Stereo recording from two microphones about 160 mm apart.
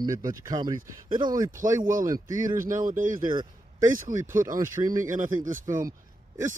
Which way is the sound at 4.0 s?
55° right (ahead or behind).